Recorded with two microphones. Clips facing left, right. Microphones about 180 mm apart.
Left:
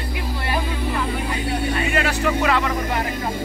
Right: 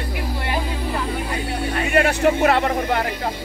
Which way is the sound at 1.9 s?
55° right (ahead or behind).